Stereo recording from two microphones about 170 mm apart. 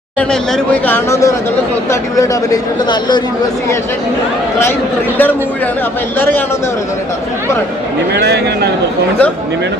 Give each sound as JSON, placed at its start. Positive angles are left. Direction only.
{"t": 0.2, "sound": "speech", "side_deg": 5}
{"t": 6.1, "sound": "speech", "side_deg": 10}